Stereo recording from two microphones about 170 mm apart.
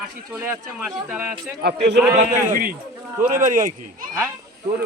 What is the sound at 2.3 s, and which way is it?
Speech, 55° right (ahead or behind).